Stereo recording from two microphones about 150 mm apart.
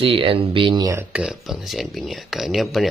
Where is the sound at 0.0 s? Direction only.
40° right (ahead or behind).